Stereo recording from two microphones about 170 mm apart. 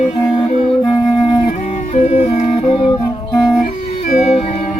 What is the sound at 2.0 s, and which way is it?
Music, 40° left (ahead or behind).